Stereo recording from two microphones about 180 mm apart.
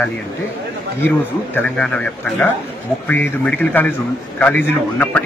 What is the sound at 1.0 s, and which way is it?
A man's voice, 10° left (ahead or behind).